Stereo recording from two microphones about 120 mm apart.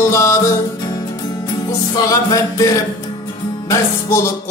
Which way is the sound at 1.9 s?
30° left (ahead or behind).